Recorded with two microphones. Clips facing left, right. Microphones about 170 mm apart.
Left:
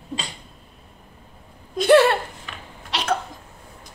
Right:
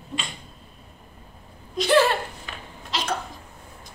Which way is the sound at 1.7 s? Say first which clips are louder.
Left 5 dB; 60° left (ahead or behind).